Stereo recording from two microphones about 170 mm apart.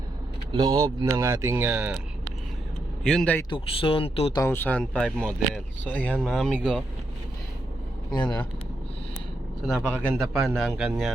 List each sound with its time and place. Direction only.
0.5 s speech: 25° right (ahead or behind)
3.0 s speech: 5° left (ahead or behind)
3.5 s speech: 30° left (ahead or behind)
4.4 s speech: 15° left (ahead or behind)
8.1 s speech: 25° left (ahead or behind)
9.6 s speech: centre (ahead or behind)
10.0 s speech: 10° right (ahead or behind)
10.5 s speech: centre (ahead or behind)